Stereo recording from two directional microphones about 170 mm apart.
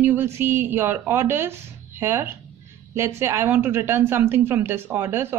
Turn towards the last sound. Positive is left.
turn(degrees=-15)  # may be behind; listen again after turning